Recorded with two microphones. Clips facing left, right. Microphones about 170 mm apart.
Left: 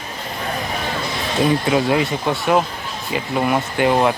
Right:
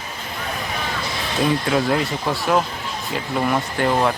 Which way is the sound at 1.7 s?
5° left (ahead or behind).